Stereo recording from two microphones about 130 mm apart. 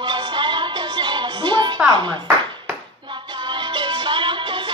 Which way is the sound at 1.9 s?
35° right (ahead or behind).